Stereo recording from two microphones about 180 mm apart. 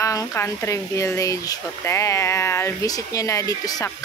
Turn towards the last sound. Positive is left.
turn(degrees=20)  # may be behind; listen again after turning